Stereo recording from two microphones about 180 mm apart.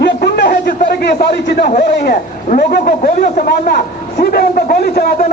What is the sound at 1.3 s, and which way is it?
A man's voice, 65° left (ahead or behind).